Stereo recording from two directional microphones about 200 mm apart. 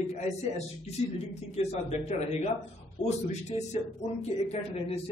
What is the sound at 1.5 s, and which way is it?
Speech, 35° left (ahead or behind).